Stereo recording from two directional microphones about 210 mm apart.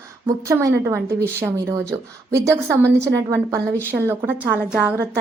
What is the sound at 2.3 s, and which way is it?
A woman's voice, 15° right (ahead or behind).